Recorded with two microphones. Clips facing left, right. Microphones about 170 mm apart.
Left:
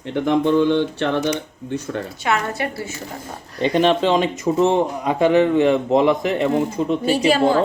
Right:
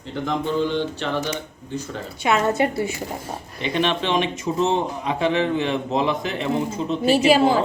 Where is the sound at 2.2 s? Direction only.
20° right (ahead or behind).